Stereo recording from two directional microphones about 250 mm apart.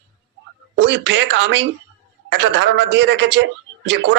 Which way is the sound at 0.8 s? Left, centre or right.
Right.